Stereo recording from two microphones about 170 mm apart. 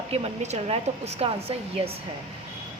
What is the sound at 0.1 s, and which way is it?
A woman's voice, 40° right (ahead or behind).